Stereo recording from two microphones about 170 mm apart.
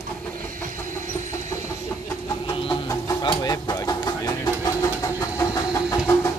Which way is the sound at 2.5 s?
25° left (ahead or behind).